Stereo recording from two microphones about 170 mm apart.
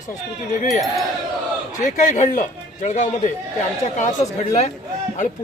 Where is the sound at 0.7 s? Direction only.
Centre (ahead or behind).